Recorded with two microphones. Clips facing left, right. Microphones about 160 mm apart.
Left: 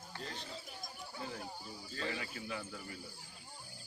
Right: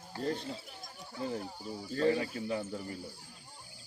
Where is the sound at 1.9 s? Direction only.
45° right (ahead or behind).